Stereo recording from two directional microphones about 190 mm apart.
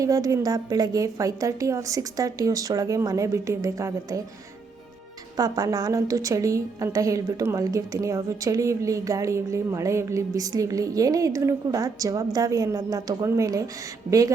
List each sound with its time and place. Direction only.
0.0 s a woman's voice: 20° right (ahead or behind)
5.4 s a woman's voice: 20° right (ahead or behind)